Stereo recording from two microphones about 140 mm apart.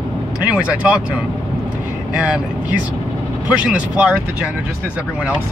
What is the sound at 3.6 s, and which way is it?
Speech, 10° right (ahead or behind).